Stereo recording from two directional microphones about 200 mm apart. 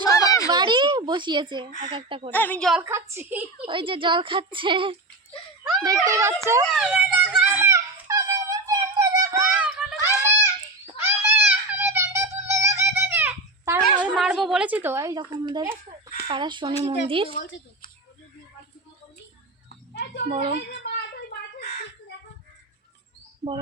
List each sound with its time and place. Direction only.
0.2 s a sound: 20° left (ahead or behind)
0.5 s a sound: 20° right (ahead or behind)
1.9 s a woman's voice: 25° right (ahead or behind)
2.3 s a woman's voice: 10° left (ahead or behind)
2.8 s a woman's voice: 15° right (ahead or behind)
3.7 s a woman's voice: 25° right (ahead or behind)
6.1 s a woman's voice: 15° right (ahead or behind)
6.7 s whimper: 5° right (ahead or behind)
10.9 s music: 15° right (ahead or behind)
14.0 s a woman's voice: 5° right (ahead or behind); by 17.3 s 25° right (ahead or behind)
19.9 s a sound: 60° left (ahead or behind)
20.3 s a woman's voice: 30° right (ahead or behind)